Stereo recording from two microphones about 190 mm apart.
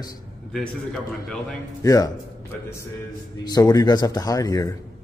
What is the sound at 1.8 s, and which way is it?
Speech, 20° left (ahead or behind).